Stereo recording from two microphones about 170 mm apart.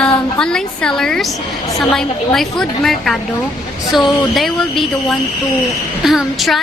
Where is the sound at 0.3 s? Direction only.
5° left (ahead or behind).